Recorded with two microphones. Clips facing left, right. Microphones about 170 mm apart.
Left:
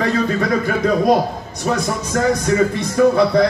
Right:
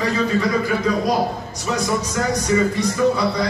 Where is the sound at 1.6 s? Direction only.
55° left (ahead or behind).